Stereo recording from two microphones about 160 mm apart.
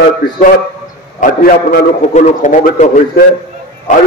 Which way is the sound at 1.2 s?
65° left (ahead or behind).